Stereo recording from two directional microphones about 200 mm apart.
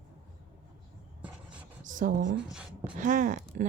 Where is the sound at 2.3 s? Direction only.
5° right (ahead or behind).